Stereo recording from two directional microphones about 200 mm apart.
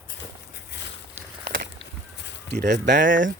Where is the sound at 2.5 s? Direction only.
60° right (ahead or behind).